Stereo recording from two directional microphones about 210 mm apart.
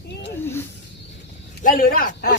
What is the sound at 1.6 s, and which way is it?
Speech, 40° left (ahead or behind).